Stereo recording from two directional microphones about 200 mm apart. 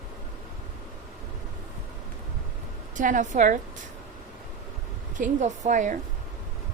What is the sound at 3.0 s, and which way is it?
Speech, 40° right (ahead or behind).